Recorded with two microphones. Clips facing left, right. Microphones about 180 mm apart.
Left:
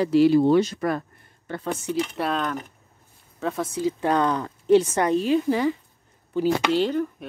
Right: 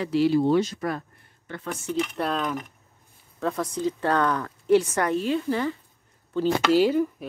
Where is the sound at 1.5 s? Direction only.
35° left (ahead or behind).